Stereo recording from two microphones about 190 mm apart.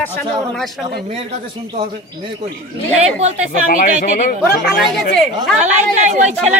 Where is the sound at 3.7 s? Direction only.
45° left (ahead or behind).